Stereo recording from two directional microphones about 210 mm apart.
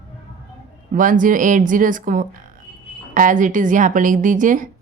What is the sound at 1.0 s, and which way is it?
A woman's voice, 40° right (ahead or behind).